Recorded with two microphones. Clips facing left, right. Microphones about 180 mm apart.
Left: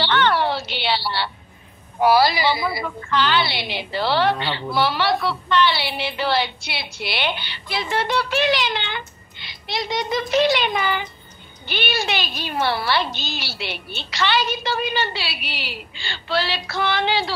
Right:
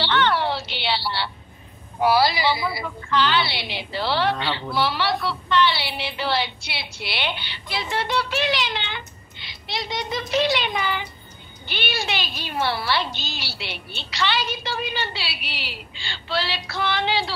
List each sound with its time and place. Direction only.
0.0 s music: 50° left (ahead or behind)
2.0 s a woman's voice: 50° left (ahead or behind)